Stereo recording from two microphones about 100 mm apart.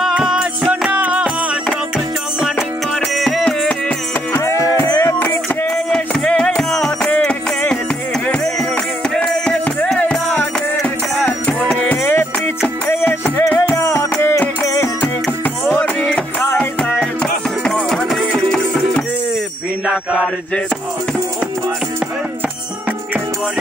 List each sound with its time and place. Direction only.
0.0 s music: 5° right (ahead or behind)
3.2 s music: 5° left (ahead or behind)
4.3 s music: 30° left (ahead or behind)
5.2 s a sound: 20° left (ahead or behind)
5.9 s music: 10° left (ahead or behind)
9.1 s music: 10° left (ahead or behind); by 14.9 s 30° left (ahead or behind)
15.4 s music: 20° left (ahead or behind)
19.9 s mantra: 10° right (ahead or behind)